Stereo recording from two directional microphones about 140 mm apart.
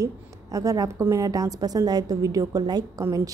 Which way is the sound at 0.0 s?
25° right (ahead or behind).